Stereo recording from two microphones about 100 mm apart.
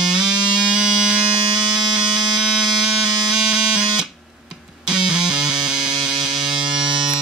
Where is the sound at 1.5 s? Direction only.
45° right (ahead or behind).